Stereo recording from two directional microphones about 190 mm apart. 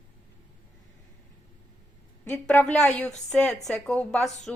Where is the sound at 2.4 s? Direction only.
5° left (ahead or behind).